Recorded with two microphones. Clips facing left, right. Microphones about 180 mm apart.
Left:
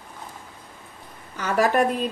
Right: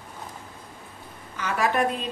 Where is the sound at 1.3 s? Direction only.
40° left (ahead or behind).